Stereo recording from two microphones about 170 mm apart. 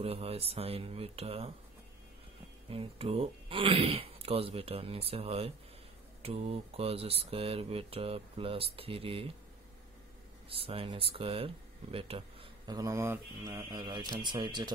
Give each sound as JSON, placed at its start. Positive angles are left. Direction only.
{"t": 0.0, "sound": "speech", "side_deg": -35}
{"t": 2.7, "sound": "speech", "side_deg": -35}
{"t": 10.5, "sound": "speech", "side_deg": -35}